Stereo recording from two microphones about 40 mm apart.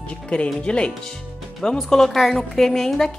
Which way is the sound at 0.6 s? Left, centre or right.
Left.